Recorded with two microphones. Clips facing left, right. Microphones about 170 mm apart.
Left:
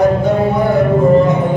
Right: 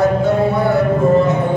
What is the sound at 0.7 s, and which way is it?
Music, 15° left (ahead or behind).